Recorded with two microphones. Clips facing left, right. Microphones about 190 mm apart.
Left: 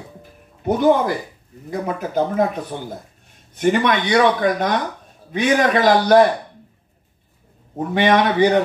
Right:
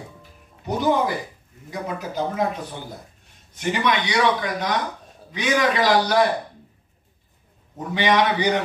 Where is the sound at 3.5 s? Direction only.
55° left (ahead or behind).